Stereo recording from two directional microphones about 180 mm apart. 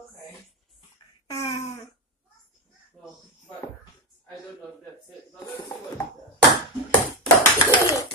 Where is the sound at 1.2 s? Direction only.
20° left (ahead or behind).